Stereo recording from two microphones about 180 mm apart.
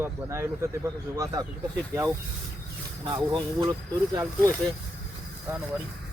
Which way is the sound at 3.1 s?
25° right (ahead or behind).